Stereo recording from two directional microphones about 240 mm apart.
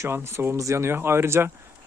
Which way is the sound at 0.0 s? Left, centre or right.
Centre.